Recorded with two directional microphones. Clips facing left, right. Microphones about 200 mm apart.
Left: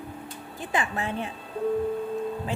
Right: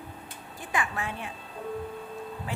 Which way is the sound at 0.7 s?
25° left (ahead or behind).